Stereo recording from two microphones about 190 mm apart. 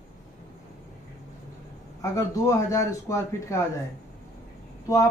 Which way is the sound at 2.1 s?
15° left (ahead or behind).